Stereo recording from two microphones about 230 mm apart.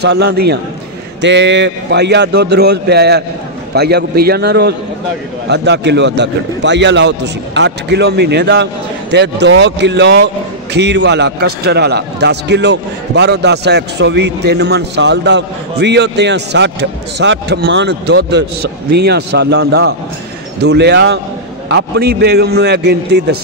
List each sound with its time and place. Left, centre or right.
0.0 s a man's voice: right